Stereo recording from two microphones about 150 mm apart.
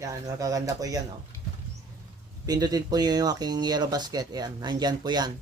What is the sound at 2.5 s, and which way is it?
Speech, 25° right (ahead or behind).